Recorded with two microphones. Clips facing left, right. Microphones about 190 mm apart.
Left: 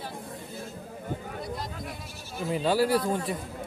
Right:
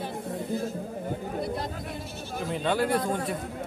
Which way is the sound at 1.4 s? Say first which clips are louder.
Right 4 dB; 60° right (ahead or behind).